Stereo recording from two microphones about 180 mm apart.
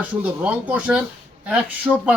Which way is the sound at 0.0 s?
5° right (ahead or behind).